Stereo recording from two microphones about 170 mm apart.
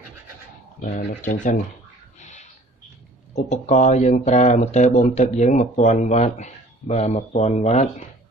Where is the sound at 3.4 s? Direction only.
40° left (ahead or behind).